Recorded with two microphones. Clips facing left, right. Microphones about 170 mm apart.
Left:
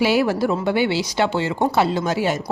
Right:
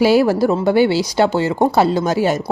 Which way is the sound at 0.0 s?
40° right (ahead or behind).